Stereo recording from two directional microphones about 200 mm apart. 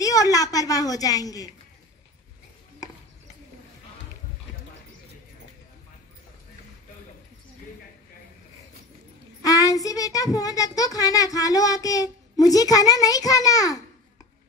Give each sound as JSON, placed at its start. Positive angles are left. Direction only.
{"t": 0.0, "sound": "a child's voice", "side_deg": 15}
{"t": 9.4, "sound": "a child's voice", "side_deg": 15}